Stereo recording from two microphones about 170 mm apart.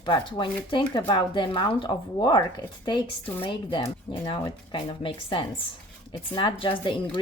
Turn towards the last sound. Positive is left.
turn(degrees=30)  # may be behind; listen again after turning